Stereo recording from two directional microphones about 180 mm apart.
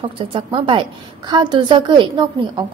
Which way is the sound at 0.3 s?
30° right (ahead or behind).